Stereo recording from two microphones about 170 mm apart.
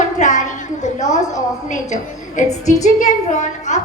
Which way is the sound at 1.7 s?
45° left (ahead or behind).